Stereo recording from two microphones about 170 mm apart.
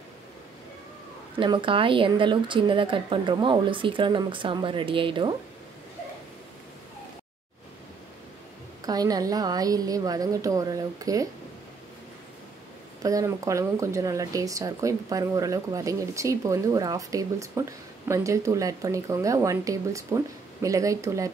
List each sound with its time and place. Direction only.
1.4 s speech: 30° right (ahead or behind)
8.8 s speech: 20° right (ahead or behind)
13.0 s speech: 20° right (ahead or behind)